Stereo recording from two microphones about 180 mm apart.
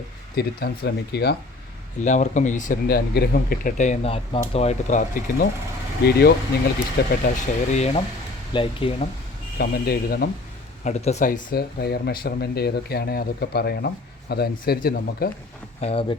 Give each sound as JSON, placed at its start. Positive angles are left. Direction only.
{"t": 0.3, "sound": "speech", "side_deg": 60}
{"t": 2.0, "sound": "speech", "side_deg": 40}
{"t": 6.1, "sound": "speech", "side_deg": 60}
{"t": 7.3, "sound": "speech", "side_deg": 40}
{"t": 9.6, "sound": "speech", "side_deg": 60}
{"t": 10.8, "sound": "speech", "side_deg": 40}
{"t": 15.8, "sound": "speech", "side_deg": 30}